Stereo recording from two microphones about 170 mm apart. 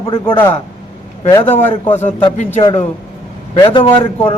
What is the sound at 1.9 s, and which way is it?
Speech, 40° left (ahead or behind).